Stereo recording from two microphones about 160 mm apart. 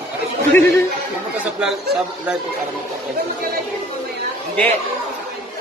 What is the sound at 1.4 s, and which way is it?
Speech, 5° right (ahead or behind).